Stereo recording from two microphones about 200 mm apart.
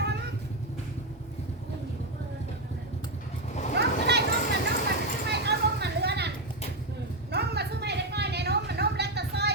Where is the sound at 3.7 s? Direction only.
55° right (ahead or behind).